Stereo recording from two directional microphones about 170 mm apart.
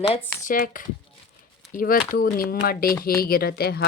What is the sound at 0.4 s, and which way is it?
A woman's voice, 50° left (ahead or behind).